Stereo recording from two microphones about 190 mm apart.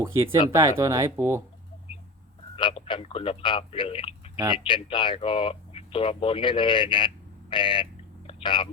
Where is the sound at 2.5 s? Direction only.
25° left (ahead or behind).